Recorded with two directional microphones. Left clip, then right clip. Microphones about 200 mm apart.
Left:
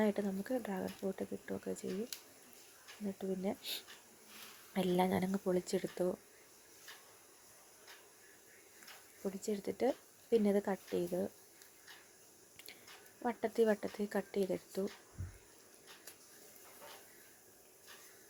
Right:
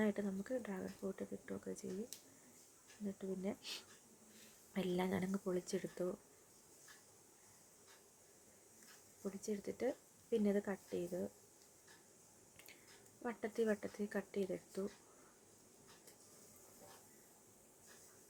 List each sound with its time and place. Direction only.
0.0 s a woman's voice: 10° left (ahead or behind)
3.2 s a woman's voice: 10° left (ahead or behind)
4.7 s a woman's voice: 15° left (ahead or behind)
9.2 s a woman's voice: 10° left (ahead or behind)
13.2 s a woman's voice: 10° left (ahead or behind)